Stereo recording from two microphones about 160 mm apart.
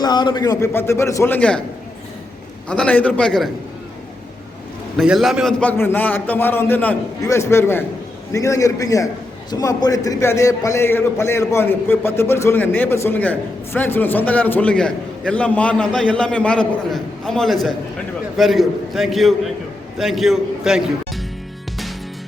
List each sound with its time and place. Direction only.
0.0 s a man's voice: 25° left (ahead or behind); by 1.6 s 5° left (ahead or behind)
2.6 s a man's voice: 5° left (ahead or behind)
4.9 s a man's voice: centre (ahead or behind)